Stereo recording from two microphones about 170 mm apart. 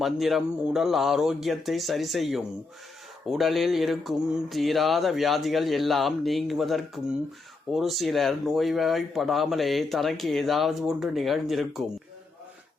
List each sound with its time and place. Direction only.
0.0 s speech: centre (ahead or behind)